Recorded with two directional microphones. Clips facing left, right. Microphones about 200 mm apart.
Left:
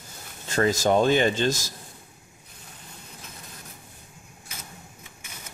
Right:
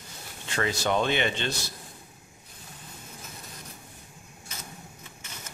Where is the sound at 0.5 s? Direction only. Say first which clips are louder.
Left 6 dB; 40° left (ahead or behind).